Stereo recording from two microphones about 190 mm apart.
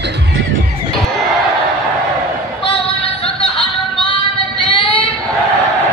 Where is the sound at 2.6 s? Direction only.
25° left (ahead or behind).